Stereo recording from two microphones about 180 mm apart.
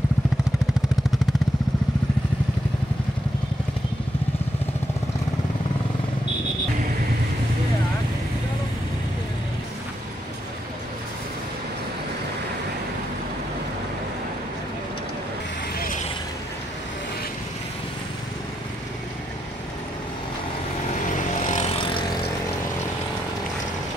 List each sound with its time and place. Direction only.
21.4 s vehicle: 40° left (ahead or behind)
21.7 s vehicle: 30° left (ahead or behind)